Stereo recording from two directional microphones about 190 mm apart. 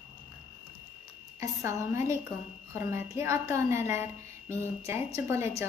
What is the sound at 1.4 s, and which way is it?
A woman's voice, 15° right (ahead or behind).